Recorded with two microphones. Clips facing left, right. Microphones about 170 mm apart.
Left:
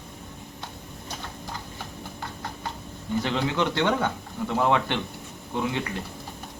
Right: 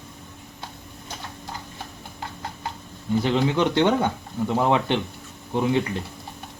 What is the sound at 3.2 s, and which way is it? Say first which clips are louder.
Speech: right 5 dB; 15° right (ahead or behind).